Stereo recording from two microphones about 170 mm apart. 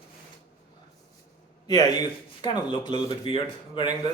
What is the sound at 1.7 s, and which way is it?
A man's voice, 25° left (ahead or behind).